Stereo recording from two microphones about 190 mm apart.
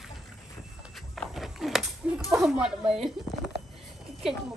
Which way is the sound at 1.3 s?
Centre (ahead or behind).